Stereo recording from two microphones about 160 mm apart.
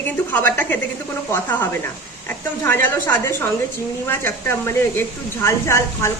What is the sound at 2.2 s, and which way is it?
A woman's voice, 15° left (ahead or behind).